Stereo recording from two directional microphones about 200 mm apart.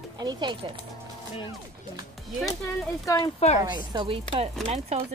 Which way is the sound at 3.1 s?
15° left (ahead or behind).